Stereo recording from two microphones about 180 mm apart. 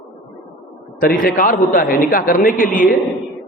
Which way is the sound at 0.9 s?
50° left (ahead or behind).